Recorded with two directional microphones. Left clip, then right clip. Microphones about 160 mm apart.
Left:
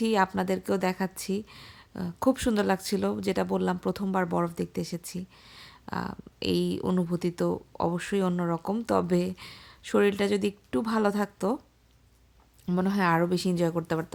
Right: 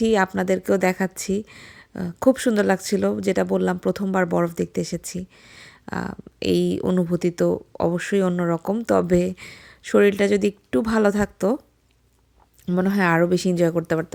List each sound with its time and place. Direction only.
0.0 s speech: 20° right (ahead or behind)
12.6 s speech: 20° right (ahead or behind)